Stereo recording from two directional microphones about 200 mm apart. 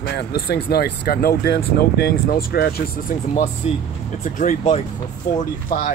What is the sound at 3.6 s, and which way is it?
Speech, 30° left (ahead or behind).